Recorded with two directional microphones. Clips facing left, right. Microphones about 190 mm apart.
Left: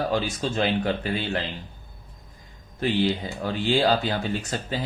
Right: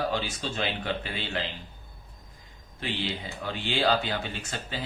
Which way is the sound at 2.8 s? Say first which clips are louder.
Left 9 dB; 45° left (ahead or behind).